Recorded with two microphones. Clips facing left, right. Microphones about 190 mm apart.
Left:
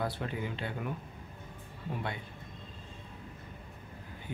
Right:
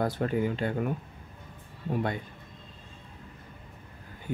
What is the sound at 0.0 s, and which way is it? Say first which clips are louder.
Speech: right 8 dB; 45° right (ahead or behind).